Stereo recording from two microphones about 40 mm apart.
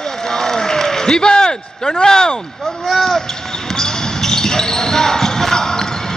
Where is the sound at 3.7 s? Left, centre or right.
Centre.